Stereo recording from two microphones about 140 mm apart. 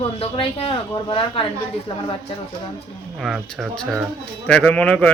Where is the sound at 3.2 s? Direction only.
Centre (ahead or behind).